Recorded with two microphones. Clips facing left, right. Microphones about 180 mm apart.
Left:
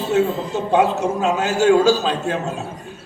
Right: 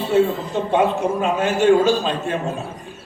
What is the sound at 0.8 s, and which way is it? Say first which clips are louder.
A man's voice: left 1 dB; 75° left (ahead or behind).